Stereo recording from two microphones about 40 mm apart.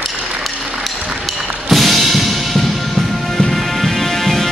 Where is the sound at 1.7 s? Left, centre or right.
Centre.